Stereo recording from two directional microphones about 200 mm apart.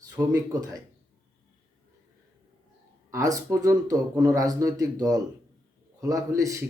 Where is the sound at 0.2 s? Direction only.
10° right (ahead or behind).